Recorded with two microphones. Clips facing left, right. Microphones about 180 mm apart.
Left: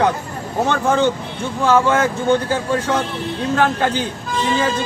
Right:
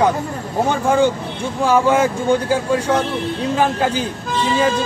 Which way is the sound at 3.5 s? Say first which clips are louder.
Left 1 dB; 10° right (ahead or behind).